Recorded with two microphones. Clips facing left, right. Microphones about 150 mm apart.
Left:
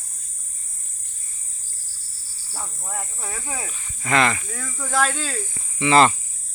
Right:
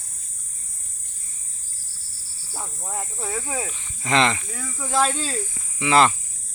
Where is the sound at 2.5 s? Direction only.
15° right (ahead or behind).